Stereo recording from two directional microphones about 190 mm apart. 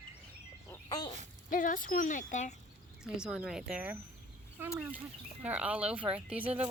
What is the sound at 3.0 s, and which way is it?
Speech, 5° right (ahead or behind).